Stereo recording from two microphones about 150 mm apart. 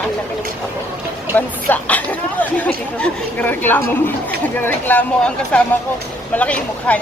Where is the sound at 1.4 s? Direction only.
10° left (ahead or behind).